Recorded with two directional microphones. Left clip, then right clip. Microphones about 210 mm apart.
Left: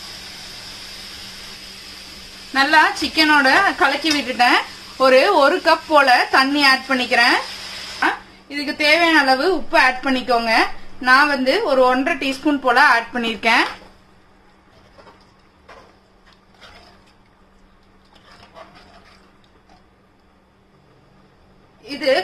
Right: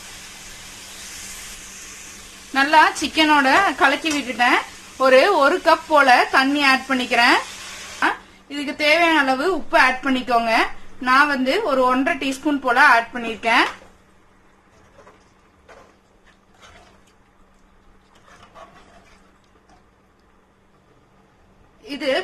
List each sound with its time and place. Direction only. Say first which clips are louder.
2.5 s speech: even; 20° right (ahead or behind)
4.3 s a woman's voice: left 2 dB; centre (ahead or behind)
8.5 s a woman's voice: left 2 dB; 5° right (ahead or behind)
13.1 s speech: left 3 dB; 10° left (ahead or behind)
21.8 s a sound: left 4 dB; 15° right (ahead or behind)